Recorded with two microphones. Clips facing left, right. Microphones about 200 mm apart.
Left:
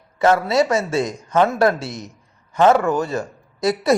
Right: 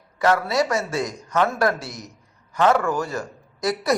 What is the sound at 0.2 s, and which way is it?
A man's voice, 25° left (ahead or behind).